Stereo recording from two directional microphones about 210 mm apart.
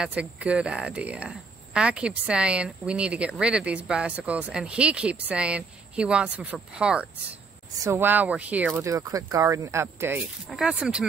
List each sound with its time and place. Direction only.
0.0 s speech: 5° right (ahead or behind)